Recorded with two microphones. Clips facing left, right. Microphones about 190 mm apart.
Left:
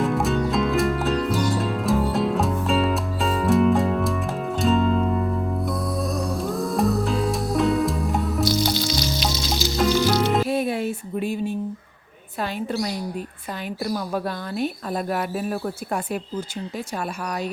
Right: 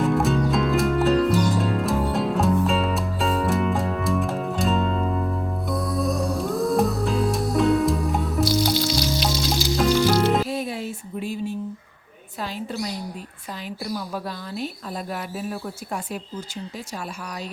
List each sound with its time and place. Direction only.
0.0 s music: centre (ahead or behind)
10.5 s a sound: 60° left (ahead or behind)
13.9 s speech: 55° left (ahead or behind)